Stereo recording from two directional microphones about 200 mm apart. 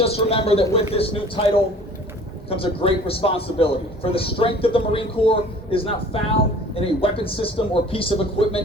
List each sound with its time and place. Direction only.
0.0 s a man's voice: 30° left (ahead or behind)
2.5 s a man's voice: 30° left (ahead or behind)